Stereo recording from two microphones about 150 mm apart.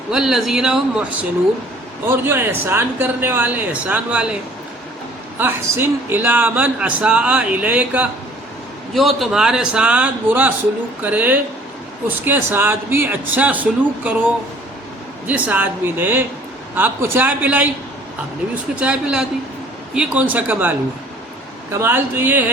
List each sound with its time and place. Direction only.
0.1 s a man's voice: 5° right (ahead or behind)
2.0 s speech: 15° right (ahead or behind)
5.4 s a man's voice: 15° right (ahead or behind)
15.3 s speech: 10° right (ahead or behind)